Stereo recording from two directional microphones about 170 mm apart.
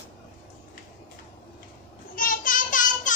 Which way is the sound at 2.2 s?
55° left (ahead or behind).